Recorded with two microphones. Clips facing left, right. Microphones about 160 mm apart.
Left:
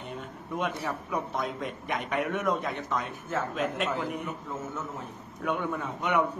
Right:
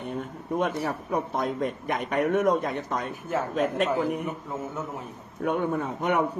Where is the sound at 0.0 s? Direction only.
50° right (ahead or behind).